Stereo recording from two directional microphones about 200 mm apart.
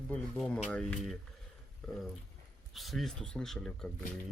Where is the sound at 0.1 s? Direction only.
5° left (ahead or behind).